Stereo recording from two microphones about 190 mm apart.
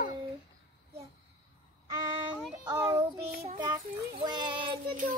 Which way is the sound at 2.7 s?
15° right (ahead or behind).